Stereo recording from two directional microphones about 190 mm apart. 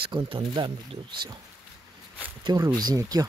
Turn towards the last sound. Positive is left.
turn(degrees=-20)  # may be behind; listen again after turning